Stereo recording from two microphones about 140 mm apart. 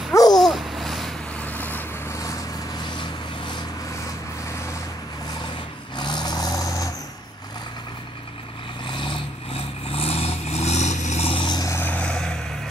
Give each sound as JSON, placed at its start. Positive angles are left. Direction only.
{"t": 0.3, "sound": "babbling", "side_deg": 0}
{"t": 1.4, "sound": "vehicle", "side_deg": 10}
{"t": 2.1, "sound": "vehicle", "side_deg": 25}
{"t": 5.9, "sound": "vehicle", "side_deg": 30}
{"t": 8.8, "sound": "vehicle", "side_deg": 35}
{"t": 11.3, "sound": "vehicle", "side_deg": 30}
{"t": 11.8, "sound": "vehicle", "side_deg": 10}